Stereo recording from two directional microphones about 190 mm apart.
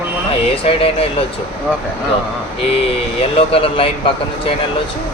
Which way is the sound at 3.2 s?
30° left (ahead or behind).